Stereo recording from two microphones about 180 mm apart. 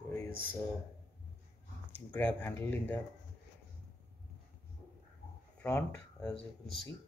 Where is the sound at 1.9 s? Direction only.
10° left (ahead or behind).